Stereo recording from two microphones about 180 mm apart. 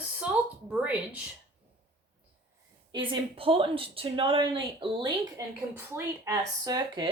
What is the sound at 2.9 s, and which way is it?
Speech, 30° right (ahead or behind).